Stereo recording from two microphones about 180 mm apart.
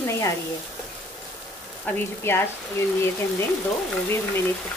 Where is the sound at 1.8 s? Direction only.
15° left (ahead or behind).